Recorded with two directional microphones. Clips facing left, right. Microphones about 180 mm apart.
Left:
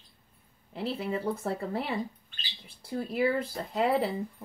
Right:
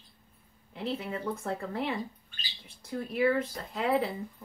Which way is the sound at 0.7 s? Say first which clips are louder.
Left 2 dB; 35° left (ahead or behind).